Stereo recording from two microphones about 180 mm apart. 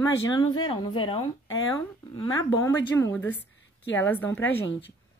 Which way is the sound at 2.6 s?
15° left (ahead or behind).